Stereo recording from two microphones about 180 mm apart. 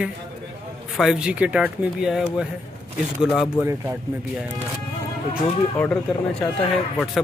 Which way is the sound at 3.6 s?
15° right (ahead or behind).